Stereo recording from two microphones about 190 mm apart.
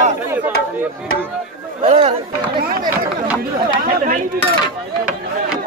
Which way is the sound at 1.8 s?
35° right (ahead or behind).